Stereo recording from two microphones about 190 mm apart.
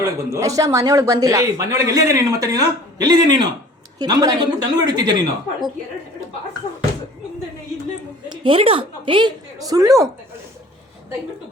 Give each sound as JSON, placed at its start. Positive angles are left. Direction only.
{"t": 0.0, "sound": "a woman's voice", "side_deg": -15}
{"t": 8.3, "sound": "a woman's voice", "side_deg": -30}